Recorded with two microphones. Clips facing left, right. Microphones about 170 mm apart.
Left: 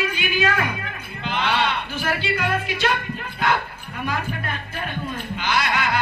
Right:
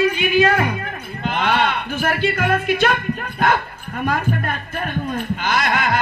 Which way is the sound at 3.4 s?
50° right (ahead or behind).